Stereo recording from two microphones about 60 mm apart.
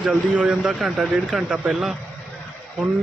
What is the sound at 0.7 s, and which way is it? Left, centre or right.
Speech, centre.